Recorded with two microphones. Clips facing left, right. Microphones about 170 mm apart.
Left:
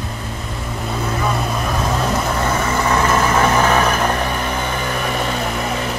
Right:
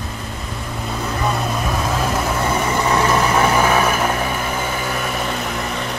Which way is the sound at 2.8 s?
15° right (ahead or behind).